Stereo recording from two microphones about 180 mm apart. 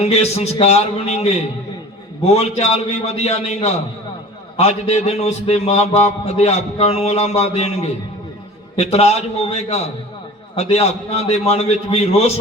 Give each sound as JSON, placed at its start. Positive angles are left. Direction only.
{"t": 0.0, "sound": "a man's voice", "side_deg": 35}